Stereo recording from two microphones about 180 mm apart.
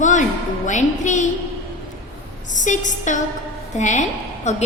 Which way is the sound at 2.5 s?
45° left (ahead or behind).